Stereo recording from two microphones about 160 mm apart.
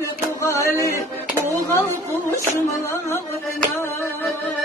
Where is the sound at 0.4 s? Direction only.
20° left (ahead or behind).